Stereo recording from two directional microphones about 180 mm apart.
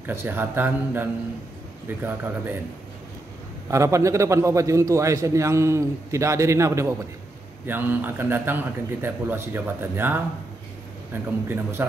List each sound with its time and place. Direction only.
0.0 s a man's voice: 10° right (ahead or behind)
3.7 s a man's voice: 15° right (ahead or behind)
11.2 s a man's voice: 10° right (ahead or behind)